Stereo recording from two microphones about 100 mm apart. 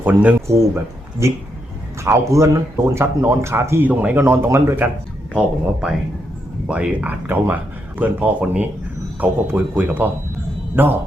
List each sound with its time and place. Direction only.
0.0 s speech: 15° right (ahead or behind)
0.4 s speech: 30° right (ahead or behind)
3.8 s speech: 15° right (ahead or behind)
6.7 s speech: 10° right (ahead or behind)